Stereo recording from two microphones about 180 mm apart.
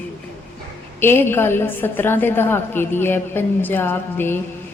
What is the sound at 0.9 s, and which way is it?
A woman's voice, 10° left (ahead or behind).